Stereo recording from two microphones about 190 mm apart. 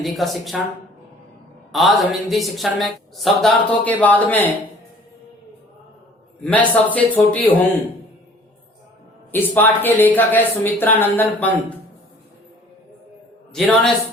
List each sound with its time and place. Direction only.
0.0 s speech: centre (ahead or behind)
1.7 s speech: centre (ahead or behind)
6.4 s speech: 5° left (ahead or behind)
9.3 s speech: 10° left (ahead or behind)
13.5 s a man's voice: 5° left (ahead or behind)